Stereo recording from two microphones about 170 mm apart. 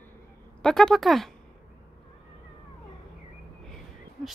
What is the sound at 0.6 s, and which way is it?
Speech, 5° left (ahead or behind).